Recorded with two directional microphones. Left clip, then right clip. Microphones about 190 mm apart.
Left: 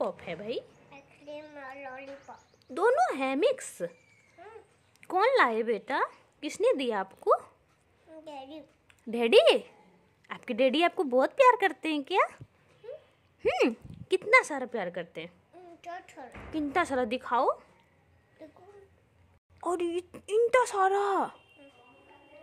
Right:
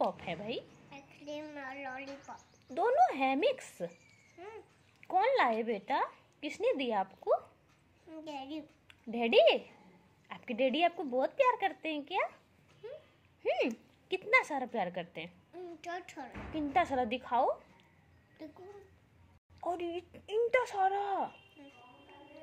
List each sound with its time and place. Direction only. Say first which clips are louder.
0.0 s a woman's voice: left 1 dB; 25° left (ahead or behind)
0.8 s a sound: even; 15° left (ahead or behind)
2.7 s speech: left 3 dB; 40° left (ahead or behind)
5.0 s speech: left 4 dB; 40° left (ahead or behind)
8.1 s a child's voice: even; 10° left (ahead or behind)
9.1 s a woman's voice: left 5 dB; 45° left (ahead or behind)
13.6 s speech: left 6 dB; 50° left (ahead or behind); by 15.3 s 30° left (ahead or behind)
15.5 s a woman's voice: right 2 dB; 10° left (ahead or behind)
16.5 s speech: left 2 dB; 35° left (ahead or behind)
19.6 s a woman's voice: left 6 dB; 45° left (ahead or behind)